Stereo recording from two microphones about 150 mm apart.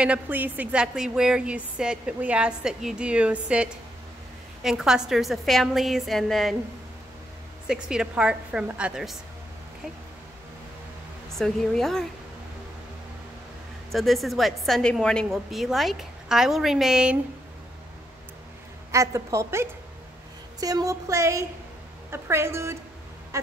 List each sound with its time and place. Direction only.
0.0 s a woman's voice: 10° right (ahead or behind)
7.6 s a woman's voice: 5° right (ahead or behind)
11.3 s a woman's voice: centre (ahead or behind)
13.9 s a woman's voice: centre (ahead or behind)
18.9 s a woman's voice: 20° right (ahead or behind)